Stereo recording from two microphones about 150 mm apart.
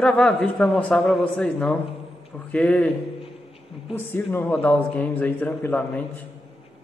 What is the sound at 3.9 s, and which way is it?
A man's voice, 10° left (ahead or behind).